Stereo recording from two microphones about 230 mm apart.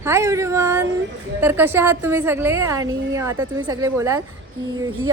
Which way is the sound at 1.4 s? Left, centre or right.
Centre.